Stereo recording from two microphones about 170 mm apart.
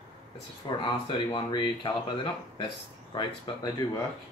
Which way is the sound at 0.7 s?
25° left (ahead or behind).